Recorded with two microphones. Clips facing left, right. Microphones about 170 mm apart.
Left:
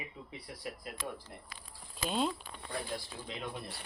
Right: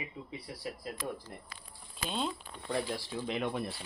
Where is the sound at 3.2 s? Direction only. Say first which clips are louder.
Right 8 dB; 65° right (ahead or behind).